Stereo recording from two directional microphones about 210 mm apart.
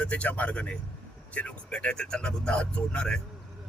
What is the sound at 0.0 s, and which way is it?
A man's voice, 5° left (ahead or behind).